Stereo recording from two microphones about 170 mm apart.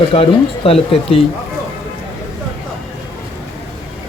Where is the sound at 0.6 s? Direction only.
35° left (ahead or behind).